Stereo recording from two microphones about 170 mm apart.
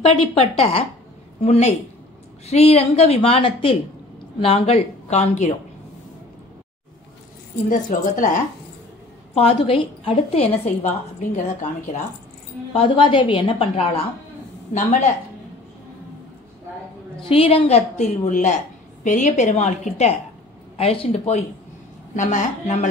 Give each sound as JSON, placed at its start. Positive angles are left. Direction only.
{"t": 0.4, "sound": "a woman's voice", "side_deg": 35}
{"t": 7.7, "sound": "a woman's voice", "side_deg": 50}
{"t": 9.3, "sound": "a woman's voice", "side_deg": 35}
{"t": 12.7, "sound": "a woman's voice", "side_deg": 30}
{"t": 17.2, "sound": "a woman's voice", "side_deg": 35}